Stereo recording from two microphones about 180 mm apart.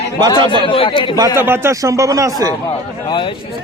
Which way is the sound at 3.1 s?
25° left (ahead or behind).